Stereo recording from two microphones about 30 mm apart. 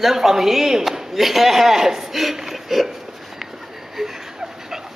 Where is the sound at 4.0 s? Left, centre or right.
Centre.